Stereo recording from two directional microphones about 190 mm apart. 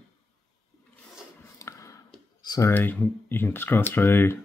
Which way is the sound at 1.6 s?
15° left (ahead or behind).